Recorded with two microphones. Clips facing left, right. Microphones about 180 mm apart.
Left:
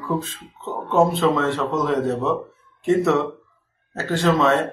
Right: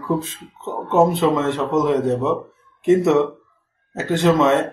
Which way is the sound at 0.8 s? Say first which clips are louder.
Right 2 dB; 20° right (ahead or behind).